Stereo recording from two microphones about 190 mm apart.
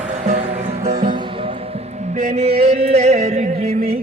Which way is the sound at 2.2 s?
45° right (ahead or behind).